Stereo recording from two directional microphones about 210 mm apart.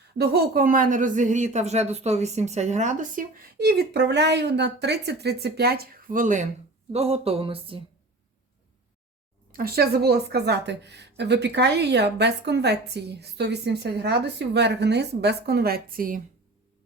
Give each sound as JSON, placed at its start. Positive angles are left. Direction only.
{"t": 0.2, "sound": "a woman's voice", "side_deg": -45}
{"t": 9.5, "sound": "a woman's voice", "side_deg": -45}